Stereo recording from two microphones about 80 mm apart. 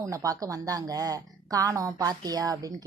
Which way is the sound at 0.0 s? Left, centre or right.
Right.